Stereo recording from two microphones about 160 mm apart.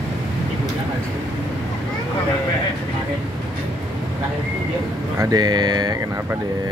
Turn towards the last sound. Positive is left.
turn(degrees=-25)  # may be behind; listen again after turning